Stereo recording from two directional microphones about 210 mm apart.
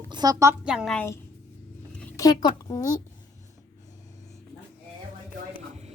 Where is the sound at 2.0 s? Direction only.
15° left (ahead or behind).